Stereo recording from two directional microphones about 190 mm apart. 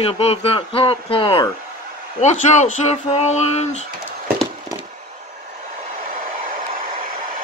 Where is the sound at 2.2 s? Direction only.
40° left (ahead or behind).